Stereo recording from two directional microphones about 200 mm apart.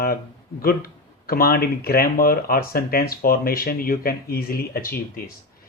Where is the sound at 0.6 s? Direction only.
50° left (ahead or behind).